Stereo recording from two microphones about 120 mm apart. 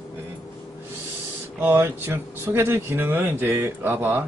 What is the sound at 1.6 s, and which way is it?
Speech, 20° right (ahead or behind).